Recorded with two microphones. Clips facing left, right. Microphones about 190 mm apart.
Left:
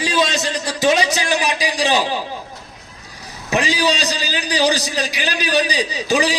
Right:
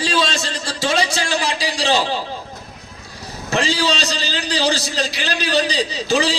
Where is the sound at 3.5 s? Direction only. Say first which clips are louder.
Left 1 dB; 15° left (ahead or behind).